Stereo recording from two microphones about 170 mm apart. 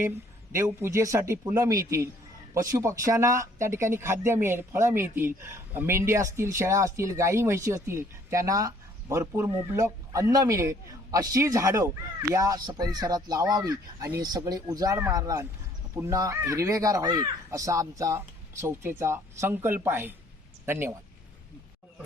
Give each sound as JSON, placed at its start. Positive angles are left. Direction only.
{"t": 0.5, "sound": "speech", "side_deg": -15}